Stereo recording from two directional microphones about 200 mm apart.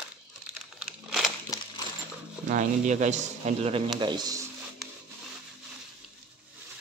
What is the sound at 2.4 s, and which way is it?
A man's voice, 35° right (ahead or behind).